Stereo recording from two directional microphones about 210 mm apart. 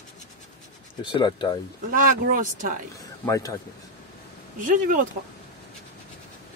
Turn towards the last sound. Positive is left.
turn(degrees=-40)  # may be behind; listen again after turning